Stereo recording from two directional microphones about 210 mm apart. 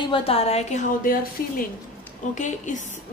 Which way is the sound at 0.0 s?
25° left (ahead or behind).